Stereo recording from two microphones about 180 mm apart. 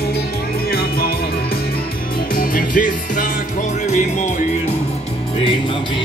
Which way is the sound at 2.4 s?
50° left (ahead or behind).